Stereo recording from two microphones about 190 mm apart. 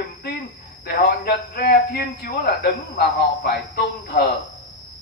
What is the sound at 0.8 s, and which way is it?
A man's voice, 60° left (ahead or behind).